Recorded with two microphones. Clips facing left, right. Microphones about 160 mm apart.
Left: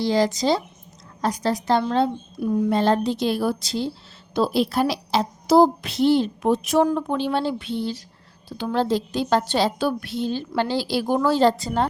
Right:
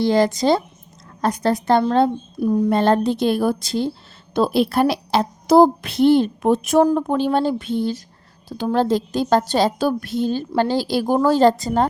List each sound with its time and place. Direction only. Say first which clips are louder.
0.0 s a woman's voice: right 4 dB; 55° right (ahead or behind)
1.8 s speech: right 4 dB; 45° right (ahead or behind)
2.6 s a woman's voice: right 2 dB; 55° right (ahead or behind)